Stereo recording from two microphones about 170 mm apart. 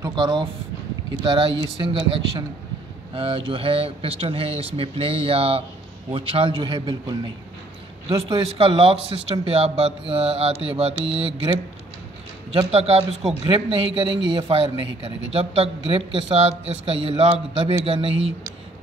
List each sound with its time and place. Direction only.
0.0 s speech: 25° right (ahead or behind)
12.7 s speech: 40° right (ahead or behind)